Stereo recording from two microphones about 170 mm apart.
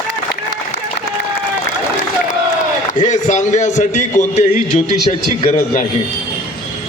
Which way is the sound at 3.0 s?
45° left (ahead or behind).